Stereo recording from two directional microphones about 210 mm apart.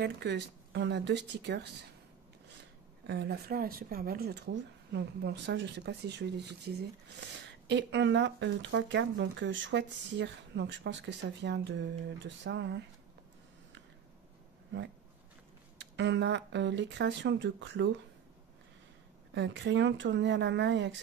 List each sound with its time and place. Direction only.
0.0 s speech: 55° right (ahead or behind)
3.1 s speech: 50° right (ahead or behind)
14.7 s speech: 60° right (ahead or behind)
19.3 s speech: 55° right (ahead or behind)